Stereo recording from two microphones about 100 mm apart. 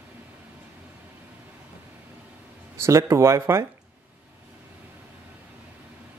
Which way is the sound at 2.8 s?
30° right (ahead or behind).